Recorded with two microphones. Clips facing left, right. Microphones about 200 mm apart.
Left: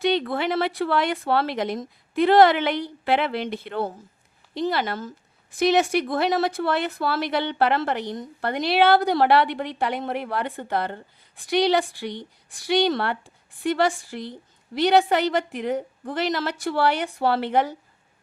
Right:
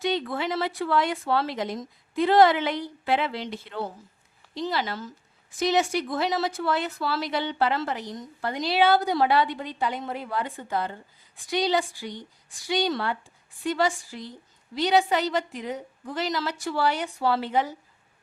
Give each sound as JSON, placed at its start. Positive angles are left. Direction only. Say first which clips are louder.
{"t": 0.0, "sound": "speech", "louder": "left 4 dB", "side_deg": 65}